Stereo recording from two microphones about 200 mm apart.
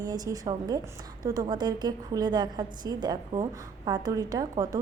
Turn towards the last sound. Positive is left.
turn(degrees=-20)  # may be behind; listen again after turning